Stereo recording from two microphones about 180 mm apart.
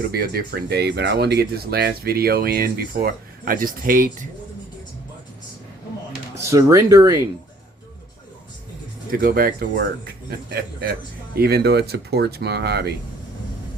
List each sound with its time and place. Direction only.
0.1 s speech: 60° right (ahead or behind)
6.4 s speech: 15° right (ahead or behind)
9.2 s speech: 55° right (ahead or behind)